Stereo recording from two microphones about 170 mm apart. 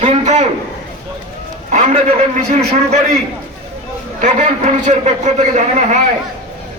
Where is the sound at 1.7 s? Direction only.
45° right (ahead or behind).